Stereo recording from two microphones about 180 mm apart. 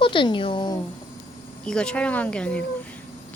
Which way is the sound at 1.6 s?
5° left (ahead or behind).